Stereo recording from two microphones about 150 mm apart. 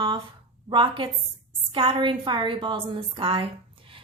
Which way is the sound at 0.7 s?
35° right (ahead or behind).